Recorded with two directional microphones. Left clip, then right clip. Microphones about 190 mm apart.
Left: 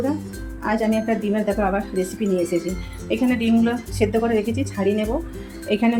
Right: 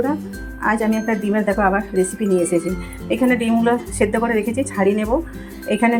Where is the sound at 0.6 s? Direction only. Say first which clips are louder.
Right 3 dB; 10° right (ahead or behind).